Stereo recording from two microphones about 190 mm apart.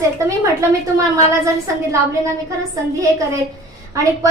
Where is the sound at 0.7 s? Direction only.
15° right (ahead or behind).